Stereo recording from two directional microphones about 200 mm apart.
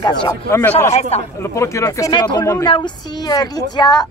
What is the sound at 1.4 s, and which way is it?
Speech, 15° left (ahead or behind).